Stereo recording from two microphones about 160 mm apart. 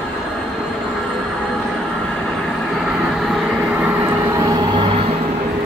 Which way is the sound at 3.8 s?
10° right (ahead or behind).